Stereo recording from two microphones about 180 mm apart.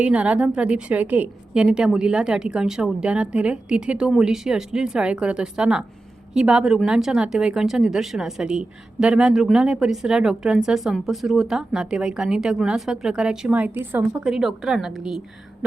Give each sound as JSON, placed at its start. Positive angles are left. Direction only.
{"t": 0.0, "sound": "speech", "side_deg": -5}